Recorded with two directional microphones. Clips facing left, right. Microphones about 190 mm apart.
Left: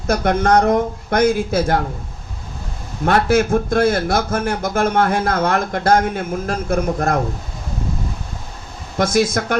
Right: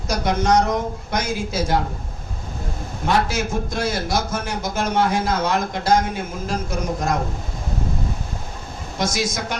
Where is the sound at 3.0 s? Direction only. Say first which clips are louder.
Left 6 dB; 55° left (ahead or behind).